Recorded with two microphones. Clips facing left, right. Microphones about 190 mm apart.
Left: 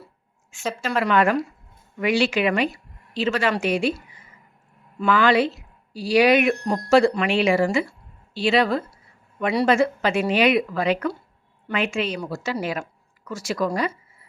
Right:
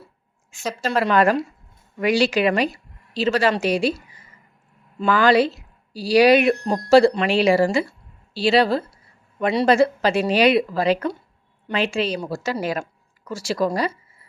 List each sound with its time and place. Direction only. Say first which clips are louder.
0.5 s a woman's voice: right 2 dB; 35° right (ahead or behind)
5.0 s speech: right 2 dB; 40° right (ahead or behind)